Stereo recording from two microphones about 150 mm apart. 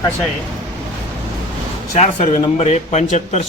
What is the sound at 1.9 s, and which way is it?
Speech, 50° left (ahead or behind).